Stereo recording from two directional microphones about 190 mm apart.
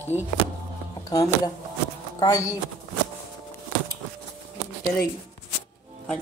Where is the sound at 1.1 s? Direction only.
20° left (ahead or behind).